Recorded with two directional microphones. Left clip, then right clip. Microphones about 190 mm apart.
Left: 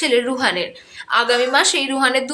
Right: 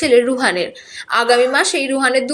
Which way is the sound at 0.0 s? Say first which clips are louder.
Right 4 dB; 10° right (ahead or behind).